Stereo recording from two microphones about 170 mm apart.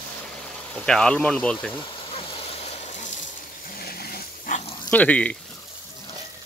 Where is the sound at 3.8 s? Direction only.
65° left (ahead or behind).